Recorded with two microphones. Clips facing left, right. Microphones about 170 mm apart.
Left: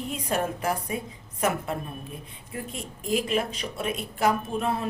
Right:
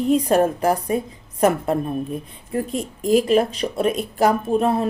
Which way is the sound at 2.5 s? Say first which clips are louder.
Right 12 dB; 40° right (ahead or behind).